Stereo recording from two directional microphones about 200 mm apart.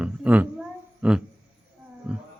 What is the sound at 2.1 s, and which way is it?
Wild animals, 5° right (ahead or behind).